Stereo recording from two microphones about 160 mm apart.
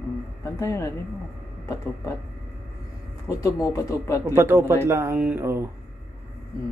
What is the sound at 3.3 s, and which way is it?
Speech, 20° left (ahead or behind).